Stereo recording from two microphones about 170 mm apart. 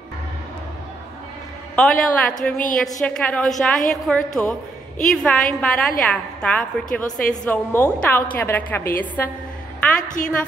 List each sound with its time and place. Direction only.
1.8 s a woman's voice: 5° left (ahead or behind)
2.5 s a woman's voice: 50° left (ahead or behind)
2.8 s a woman's voice: 5° left (ahead or behind)